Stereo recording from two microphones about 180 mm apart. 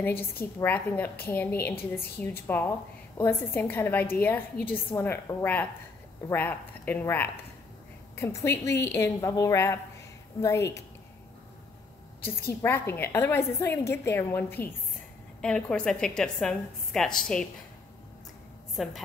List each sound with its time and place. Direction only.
0.4 s a woman's voice: 10° left (ahead or behind)
12.2 s a woman's voice: 10° left (ahead or behind)
18.8 s a woman's voice: centre (ahead or behind)